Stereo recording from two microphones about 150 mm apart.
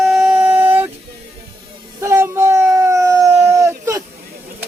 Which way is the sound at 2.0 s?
20° right (ahead or behind).